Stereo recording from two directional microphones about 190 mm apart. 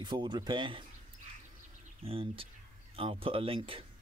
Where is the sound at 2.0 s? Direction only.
30° right (ahead or behind).